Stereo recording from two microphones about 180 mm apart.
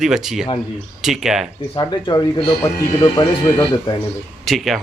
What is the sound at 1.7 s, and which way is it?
Speech, 25° left (ahead or behind).